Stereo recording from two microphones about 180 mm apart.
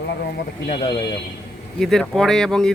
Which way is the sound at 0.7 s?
30° left (ahead or behind).